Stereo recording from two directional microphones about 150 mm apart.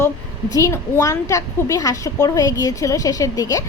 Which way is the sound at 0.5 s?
20° left (ahead or behind).